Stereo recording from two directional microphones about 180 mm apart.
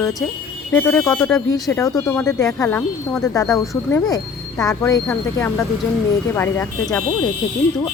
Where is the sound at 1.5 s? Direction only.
15° left (ahead or behind).